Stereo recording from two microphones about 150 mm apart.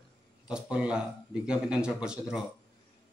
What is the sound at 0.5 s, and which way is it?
A man's voice, 5° right (ahead or behind).